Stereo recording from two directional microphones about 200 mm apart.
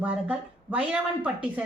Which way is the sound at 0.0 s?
5° right (ahead or behind).